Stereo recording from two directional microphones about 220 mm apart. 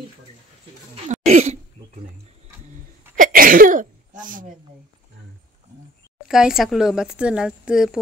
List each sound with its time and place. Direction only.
1.0 s throat clearing: 35° right (ahead or behind)
3.2 s sneeze: 40° right (ahead or behind)
6.2 s a woman's voice: centre (ahead or behind)